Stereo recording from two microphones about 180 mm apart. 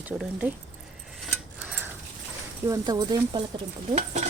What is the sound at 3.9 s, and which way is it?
Speech, 40° right (ahead or behind).